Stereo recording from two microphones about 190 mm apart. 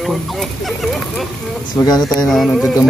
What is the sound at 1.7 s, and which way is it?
Speech, 20° left (ahead or behind).